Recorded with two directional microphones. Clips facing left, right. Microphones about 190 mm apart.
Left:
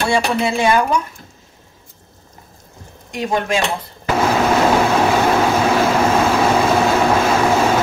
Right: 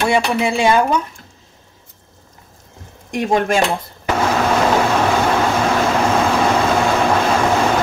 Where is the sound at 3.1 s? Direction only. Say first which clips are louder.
Right 3 dB; 50° right (ahead or behind).